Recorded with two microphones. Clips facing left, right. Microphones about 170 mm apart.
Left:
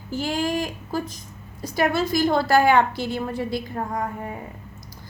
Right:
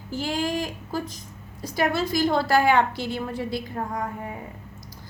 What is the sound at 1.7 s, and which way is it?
A woman's voice, 50° left (ahead or behind).